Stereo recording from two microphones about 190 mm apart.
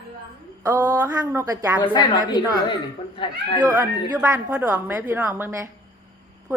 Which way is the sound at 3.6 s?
20° right (ahead or behind).